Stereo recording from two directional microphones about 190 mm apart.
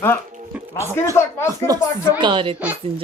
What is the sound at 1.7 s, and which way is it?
Speech, 20° right (ahead or behind).